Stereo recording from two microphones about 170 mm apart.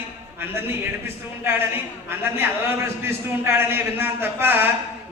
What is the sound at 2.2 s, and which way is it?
A man's voice, 15° right (ahead or behind).